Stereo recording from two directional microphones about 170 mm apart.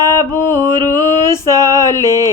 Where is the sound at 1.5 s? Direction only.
25° right (ahead or behind).